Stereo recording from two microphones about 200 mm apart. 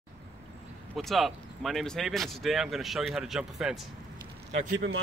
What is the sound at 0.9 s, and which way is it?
Speech, centre (ahead or behind).